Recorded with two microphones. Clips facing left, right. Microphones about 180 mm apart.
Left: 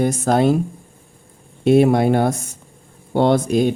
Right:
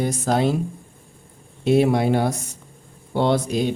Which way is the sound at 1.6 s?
50° left (ahead or behind).